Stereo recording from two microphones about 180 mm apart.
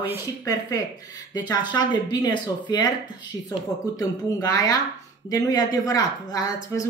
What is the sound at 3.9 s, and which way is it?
Speech, 20° left (ahead or behind).